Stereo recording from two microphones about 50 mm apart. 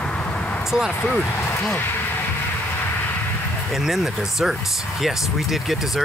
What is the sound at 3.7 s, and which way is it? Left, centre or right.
Speech, centre.